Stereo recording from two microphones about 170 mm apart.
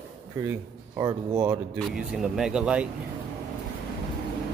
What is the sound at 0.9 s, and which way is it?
Speech, 20° right (ahead or behind).